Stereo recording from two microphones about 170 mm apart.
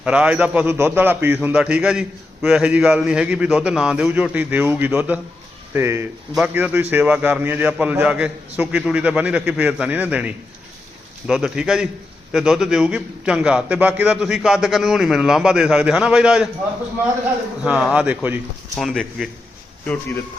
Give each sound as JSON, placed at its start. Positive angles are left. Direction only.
{"t": 0.0, "sound": "a man's voice", "side_deg": -5}
{"t": 17.6, "sound": "a man's voice", "side_deg": -5}
{"t": 18.8, "sound": "a man's voice", "side_deg": 0}